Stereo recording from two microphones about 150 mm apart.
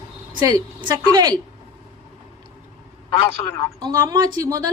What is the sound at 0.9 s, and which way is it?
Speech, 25° right (ahead or behind).